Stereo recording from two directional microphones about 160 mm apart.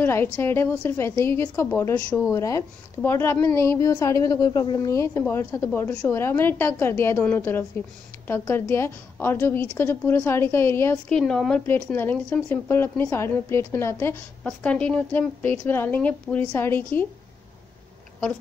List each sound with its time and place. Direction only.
0.0 s a woman's voice: 15° left (ahead or behind)
2.3 s a woman's voice: 20° left (ahead or behind)